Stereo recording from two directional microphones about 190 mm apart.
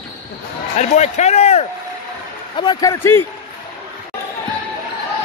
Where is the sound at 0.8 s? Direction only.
35° left (ahead or behind).